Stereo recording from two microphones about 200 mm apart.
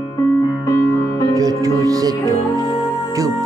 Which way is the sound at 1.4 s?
15° right (ahead or behind).